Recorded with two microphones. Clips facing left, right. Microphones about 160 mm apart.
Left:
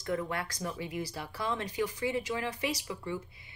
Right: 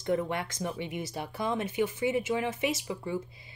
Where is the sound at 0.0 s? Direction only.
25° right (ahead or behind).